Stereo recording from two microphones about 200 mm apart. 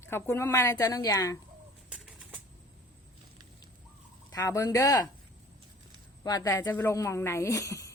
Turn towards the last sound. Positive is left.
turn(degrees=15)  # may be behind; listen again after turning